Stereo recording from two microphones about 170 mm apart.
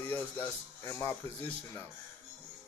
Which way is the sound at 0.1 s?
15° left (ahead or behind).